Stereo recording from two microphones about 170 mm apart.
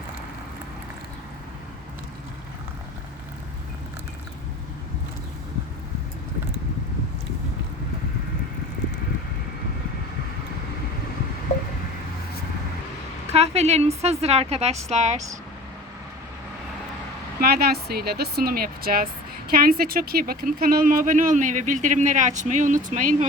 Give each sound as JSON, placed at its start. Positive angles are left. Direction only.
{"t": 13.2, "sound": "a woman's voice", "side_deg": -40}
{"t": 17.4, "sound": "speech", "side_deg": -65}